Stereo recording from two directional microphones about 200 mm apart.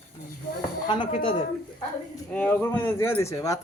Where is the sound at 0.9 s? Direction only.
25° left (ahead or behind).